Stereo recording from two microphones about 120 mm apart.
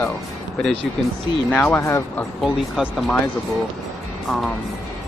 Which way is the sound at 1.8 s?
25° left (ahead or behind).